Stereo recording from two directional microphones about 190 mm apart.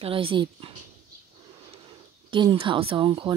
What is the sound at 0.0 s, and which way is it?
Speech, 30° right (ahead or behind).